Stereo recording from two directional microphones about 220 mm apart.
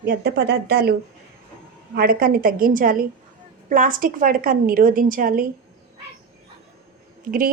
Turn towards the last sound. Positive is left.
turn(degrees=-40)  # may be behind; listen again after turning